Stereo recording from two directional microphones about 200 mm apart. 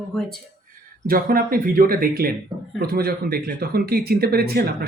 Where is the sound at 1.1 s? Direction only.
45° right (ahead or behind).